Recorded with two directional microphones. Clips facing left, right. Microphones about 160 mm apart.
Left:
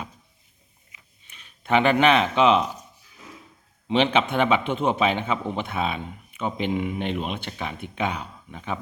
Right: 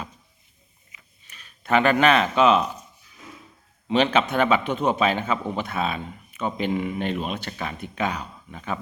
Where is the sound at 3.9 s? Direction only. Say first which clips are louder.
Even; 15° left (ahead or behind).